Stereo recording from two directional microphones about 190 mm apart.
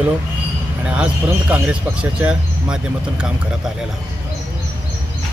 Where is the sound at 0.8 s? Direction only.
5° right (ahead or behind).